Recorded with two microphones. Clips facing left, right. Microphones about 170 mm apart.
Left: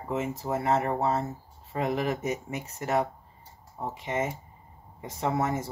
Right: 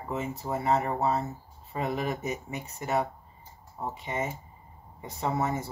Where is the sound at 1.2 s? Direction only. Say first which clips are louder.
Left 2 dB; 65° left (ahead or behind).